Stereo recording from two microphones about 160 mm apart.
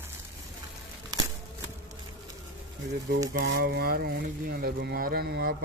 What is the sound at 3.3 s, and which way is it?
Speech, 75° right (ahead or behind).